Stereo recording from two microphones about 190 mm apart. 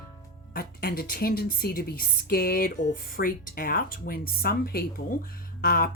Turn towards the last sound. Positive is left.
turn(degrees=50)  # may be behind; listen again after turning